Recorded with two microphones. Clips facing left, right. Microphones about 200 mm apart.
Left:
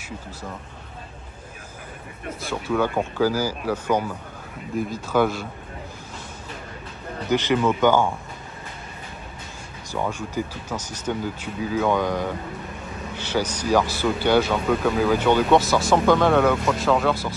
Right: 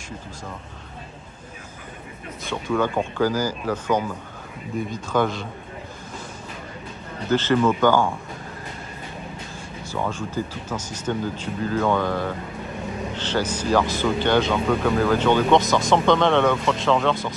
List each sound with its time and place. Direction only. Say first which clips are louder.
2.5 s speech: even; 5° left (ahead or behind)
7.2 s speech: right 1 dB; 15° left (ahead or behind)
9.8 s speech: even; 10° left (ahead or behind)